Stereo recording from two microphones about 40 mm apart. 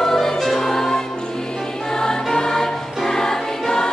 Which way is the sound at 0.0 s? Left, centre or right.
Centre.